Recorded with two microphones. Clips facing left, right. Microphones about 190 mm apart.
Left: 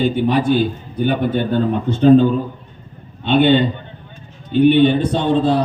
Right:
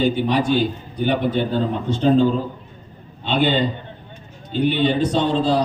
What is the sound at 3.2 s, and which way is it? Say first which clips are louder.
A man's voice: left 6 dB; 60° left (ahead or behind).